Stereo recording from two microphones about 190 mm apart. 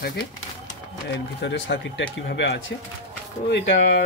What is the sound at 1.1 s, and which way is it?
Speech, 70° left (ahead or behind).